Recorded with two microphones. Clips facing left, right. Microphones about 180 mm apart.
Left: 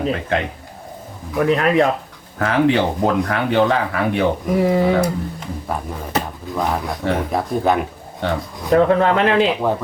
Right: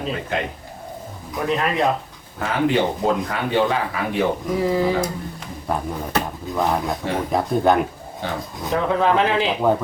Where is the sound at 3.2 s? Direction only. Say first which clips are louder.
Left 4 dB; 70° left (ahead or behind).